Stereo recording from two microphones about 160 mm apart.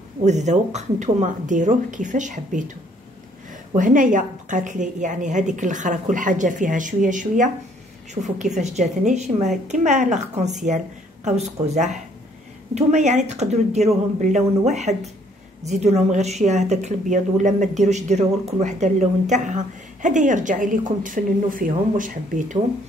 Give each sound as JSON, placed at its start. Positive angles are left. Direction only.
{"t": 0.2, "sound": "a woman's voice", "side_deg": -45}